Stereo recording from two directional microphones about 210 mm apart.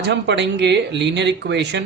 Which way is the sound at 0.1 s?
55° right (ahead or behind).